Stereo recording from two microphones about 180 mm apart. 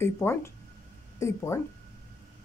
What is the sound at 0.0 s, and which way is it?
Speech, 15° left (ahead or behind).